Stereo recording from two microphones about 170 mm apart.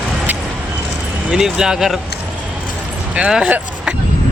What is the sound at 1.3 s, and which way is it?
Speech, 5° right (ahead or behind).